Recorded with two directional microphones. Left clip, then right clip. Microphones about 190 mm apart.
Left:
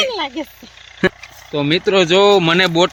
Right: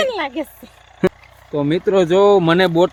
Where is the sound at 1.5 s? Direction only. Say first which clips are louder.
Left 1 dB; 15° left (ahead or behind).